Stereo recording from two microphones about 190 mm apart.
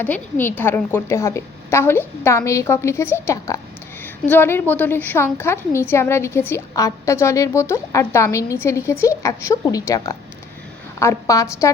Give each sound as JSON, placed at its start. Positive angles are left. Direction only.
{"t": 0.0, "sound": "a woman's voice", "side_deg": 10}